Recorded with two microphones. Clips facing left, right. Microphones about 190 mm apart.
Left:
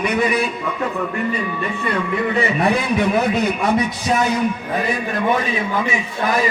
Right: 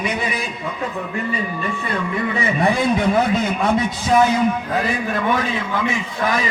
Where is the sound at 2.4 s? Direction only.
65° left (ahead or behind).